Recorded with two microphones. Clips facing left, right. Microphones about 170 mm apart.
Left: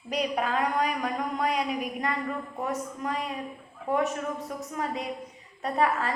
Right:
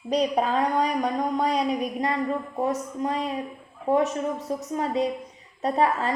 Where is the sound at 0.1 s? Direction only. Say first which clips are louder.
Right 5 dB; 30° right (ahead or behind).